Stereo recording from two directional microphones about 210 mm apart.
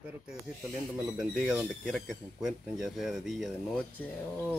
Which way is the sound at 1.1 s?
5° right (ahead or behind).